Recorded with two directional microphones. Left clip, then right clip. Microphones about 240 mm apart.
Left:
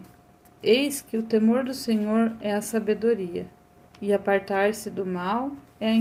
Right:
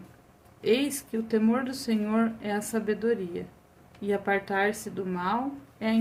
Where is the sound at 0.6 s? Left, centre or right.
Centre.